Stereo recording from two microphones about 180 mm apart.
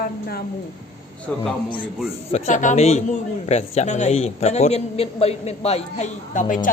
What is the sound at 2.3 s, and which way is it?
Speech, 40° left (ahead or behind).